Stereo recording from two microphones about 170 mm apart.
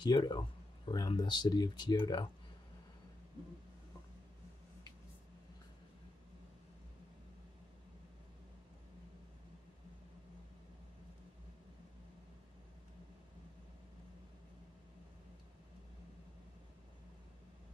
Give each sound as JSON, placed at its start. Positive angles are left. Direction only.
{"t": 0.0, "sound": "speech", "side_deg": 25}